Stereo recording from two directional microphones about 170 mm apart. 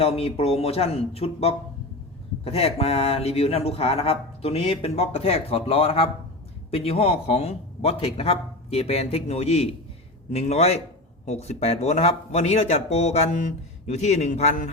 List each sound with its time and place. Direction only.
0.0 s a man's voice: 35° left (ahead or behind)